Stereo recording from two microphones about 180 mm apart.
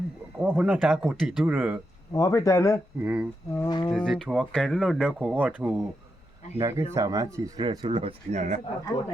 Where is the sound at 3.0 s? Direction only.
10° right (ahead or behind).